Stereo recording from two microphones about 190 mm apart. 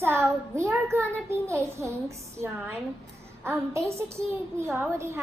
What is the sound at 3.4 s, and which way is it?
Speech, 15° right (ahead or behind).